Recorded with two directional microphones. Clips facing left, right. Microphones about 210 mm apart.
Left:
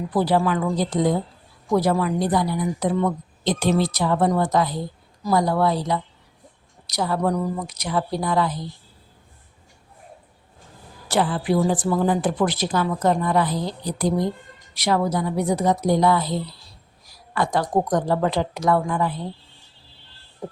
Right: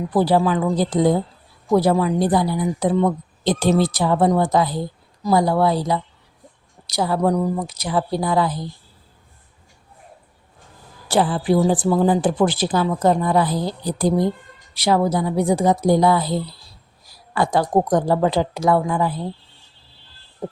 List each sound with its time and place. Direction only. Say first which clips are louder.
0.1 s a woman's voice: right 3 dB; 30° right (ahead or behind)
11.1 s speech: right 3 dB; 35° right (ahead or behind)
17.3 s speech: right 3 dB; 30° right (ahead or behind)